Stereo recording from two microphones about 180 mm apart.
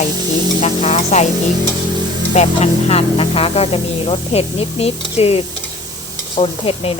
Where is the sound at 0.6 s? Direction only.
35° left (ahead or behind).